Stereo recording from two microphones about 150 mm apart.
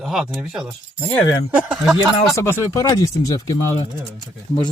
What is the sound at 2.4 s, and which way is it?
Speech, 20° left (ahead or behind).